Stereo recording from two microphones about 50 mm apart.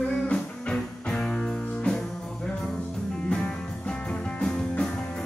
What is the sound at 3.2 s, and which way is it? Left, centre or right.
Music, centre.